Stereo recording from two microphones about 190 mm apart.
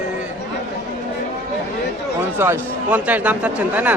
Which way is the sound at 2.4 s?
10° right (ahead or behind).